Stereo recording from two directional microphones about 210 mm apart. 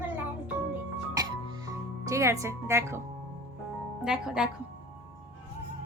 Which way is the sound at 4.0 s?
5° right (ahead or behind).